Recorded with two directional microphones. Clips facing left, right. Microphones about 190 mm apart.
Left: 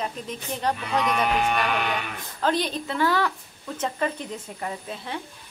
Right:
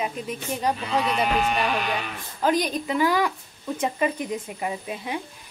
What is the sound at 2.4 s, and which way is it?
Speech, 10° right (ahead or behind).